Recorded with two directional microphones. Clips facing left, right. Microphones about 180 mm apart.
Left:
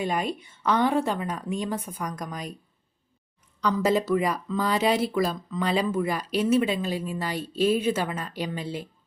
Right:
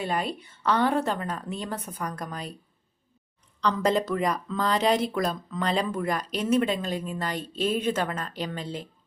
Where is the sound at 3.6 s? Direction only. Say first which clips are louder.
Left 1 dB; 5° left (ahead or behind).